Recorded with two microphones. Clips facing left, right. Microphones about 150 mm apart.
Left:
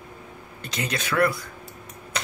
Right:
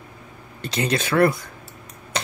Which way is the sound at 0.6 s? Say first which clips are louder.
Right 7 dB; 30° right (ahead or behind).